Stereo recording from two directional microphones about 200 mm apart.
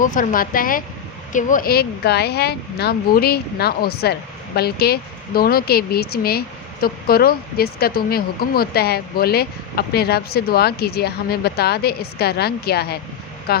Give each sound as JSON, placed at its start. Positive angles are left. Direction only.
{"t": 0.0, "sound": "speech", "side_deg": 40}